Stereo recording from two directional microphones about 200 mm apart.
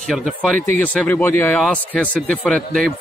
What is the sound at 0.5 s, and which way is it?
Speech, 35° right (ahead or behind).